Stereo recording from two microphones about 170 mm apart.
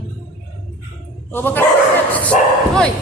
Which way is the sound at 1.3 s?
10° left (ahead or behind).